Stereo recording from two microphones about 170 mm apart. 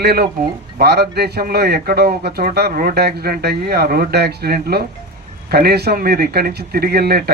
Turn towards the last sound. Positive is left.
turn(degrees=-65)  # may be behind; listen again after turning